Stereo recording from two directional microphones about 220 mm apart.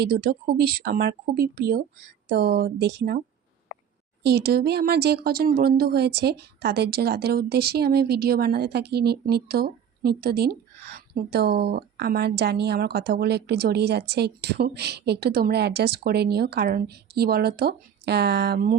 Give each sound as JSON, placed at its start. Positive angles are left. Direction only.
{"t": 0.0, "sound": "speech", "side_deg": -45}
{"t": 4.2, "sound": "speech", "side_deg": -45}